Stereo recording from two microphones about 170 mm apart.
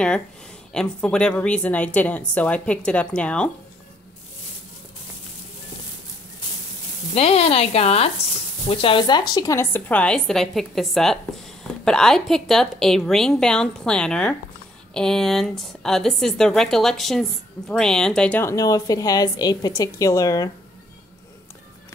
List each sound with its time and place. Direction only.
0.7 s speech: 5° left (ahead or behind)
7.2 s a woman's voice: 35° left (ahead or behind)